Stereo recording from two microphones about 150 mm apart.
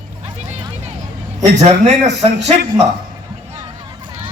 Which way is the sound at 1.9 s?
50° right (ahead or behind).